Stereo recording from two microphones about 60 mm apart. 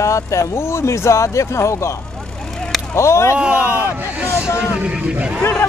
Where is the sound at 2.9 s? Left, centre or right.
Left.